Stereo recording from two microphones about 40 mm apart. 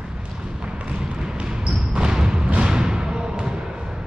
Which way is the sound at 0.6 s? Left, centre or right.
Right.